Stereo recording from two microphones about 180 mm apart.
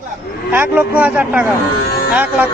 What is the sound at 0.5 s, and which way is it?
A man's voice, 10° right (ahead or behind).